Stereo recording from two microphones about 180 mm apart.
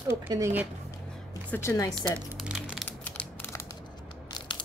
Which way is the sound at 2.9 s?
10° left (ahead or behind).